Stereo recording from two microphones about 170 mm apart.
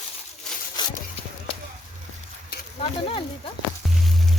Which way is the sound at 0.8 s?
25° left (ahead or behind).